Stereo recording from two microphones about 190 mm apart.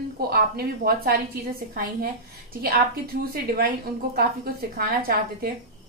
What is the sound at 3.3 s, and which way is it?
Speech, 55° right (ahead or behind).